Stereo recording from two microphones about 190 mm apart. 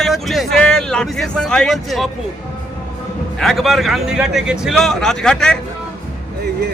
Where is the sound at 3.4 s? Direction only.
Centre (ahead or behind).